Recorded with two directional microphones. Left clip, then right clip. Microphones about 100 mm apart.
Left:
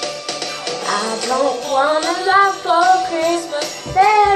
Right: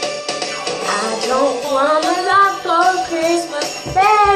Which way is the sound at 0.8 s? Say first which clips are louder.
Even; 50° right (ahead or behind).